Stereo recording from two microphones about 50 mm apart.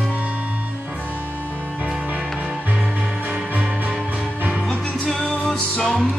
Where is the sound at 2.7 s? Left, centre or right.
Right.